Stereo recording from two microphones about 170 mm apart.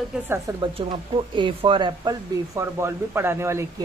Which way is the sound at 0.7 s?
30° right (ahead or behind).